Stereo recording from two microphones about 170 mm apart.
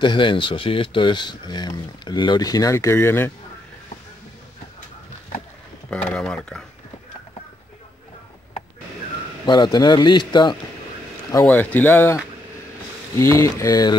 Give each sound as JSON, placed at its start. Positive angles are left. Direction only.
{"t": 0.0, "sound": "speech", "side_deg": 30}
{"t": 5.9, "sound": "speech", "side_deg": 5}
{"t": 9.5, "sound": "speech", "side_deg": 25}
{"t": 11.4, "sound": "speech", "side_deg": 10}